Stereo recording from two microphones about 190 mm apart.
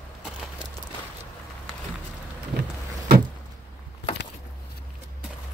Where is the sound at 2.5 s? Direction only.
55° right (ahead or behind).